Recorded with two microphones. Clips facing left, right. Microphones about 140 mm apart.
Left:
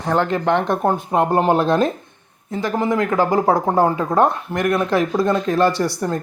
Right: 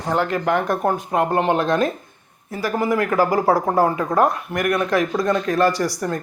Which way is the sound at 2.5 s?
20° left (ahead or behind).